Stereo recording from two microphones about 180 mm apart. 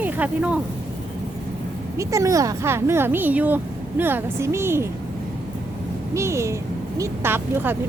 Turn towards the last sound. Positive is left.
turn(degrees=-10)  # may be behind; listen again after turning